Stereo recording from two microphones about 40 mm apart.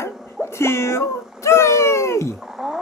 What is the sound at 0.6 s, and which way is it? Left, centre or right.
Speech, left.